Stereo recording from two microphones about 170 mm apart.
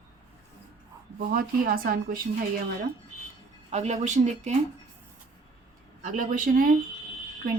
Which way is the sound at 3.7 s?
45° right (ahead or behind).